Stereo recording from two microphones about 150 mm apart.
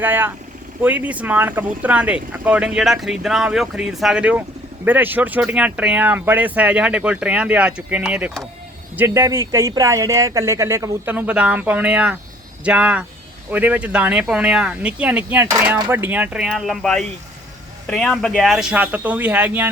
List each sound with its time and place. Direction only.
0.0 s speech: 10° right (ahead or behind)